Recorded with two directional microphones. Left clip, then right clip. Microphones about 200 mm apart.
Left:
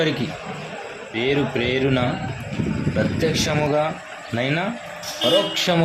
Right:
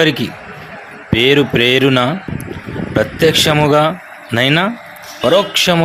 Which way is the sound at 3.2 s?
35° right (ahead or behind).